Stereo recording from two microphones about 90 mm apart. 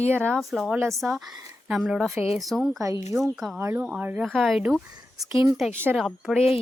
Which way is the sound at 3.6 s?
30° right (ahead or behind).